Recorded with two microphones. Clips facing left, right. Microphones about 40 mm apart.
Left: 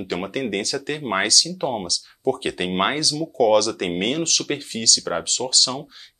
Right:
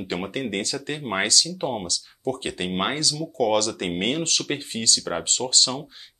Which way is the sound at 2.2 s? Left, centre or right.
Centre.